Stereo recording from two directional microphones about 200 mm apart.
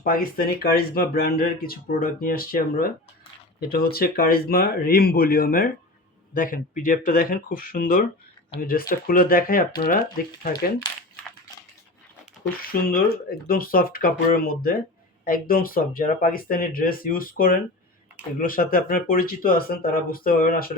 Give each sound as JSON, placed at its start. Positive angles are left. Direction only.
{"t": 0.0, "sound": "speech", "side_deg": 45}
{"t": 12.6, "sound": "speech", "side_deg": 45}